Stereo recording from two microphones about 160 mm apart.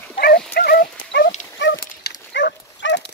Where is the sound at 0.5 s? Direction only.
75° left (ahead or behind).